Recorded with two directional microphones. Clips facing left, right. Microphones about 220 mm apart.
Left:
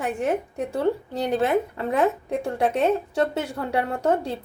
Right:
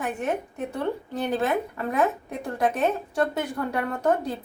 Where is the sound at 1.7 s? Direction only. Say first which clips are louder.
Left 2 dB; 30° left (ahead or behind).